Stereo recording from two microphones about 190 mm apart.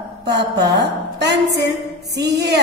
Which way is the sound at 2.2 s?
60° right (ahead or behind).